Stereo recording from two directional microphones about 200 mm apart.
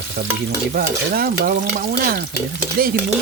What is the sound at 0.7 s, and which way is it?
Stir, 45° right (ahead or behind).